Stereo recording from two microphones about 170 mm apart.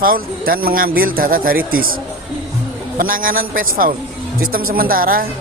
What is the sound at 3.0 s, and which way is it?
Speech, 55° right (ahead or behind).